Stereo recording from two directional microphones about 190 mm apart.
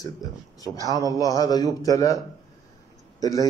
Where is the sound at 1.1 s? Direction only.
20° left (ahead or behind).